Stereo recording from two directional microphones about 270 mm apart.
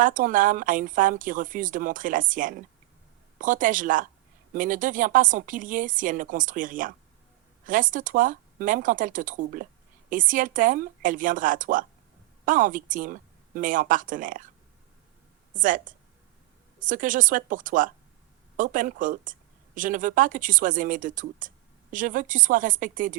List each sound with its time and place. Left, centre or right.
0.0 s speech: right
15.5 s speech: right